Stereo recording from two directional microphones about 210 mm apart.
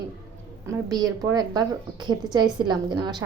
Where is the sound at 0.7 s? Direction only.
15° right (ahead or behind).